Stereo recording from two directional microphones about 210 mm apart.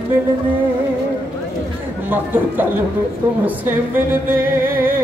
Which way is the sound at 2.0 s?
10° right (ahead or behind).